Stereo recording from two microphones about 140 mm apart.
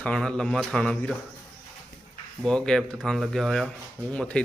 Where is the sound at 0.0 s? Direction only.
5° left (ahead or behind).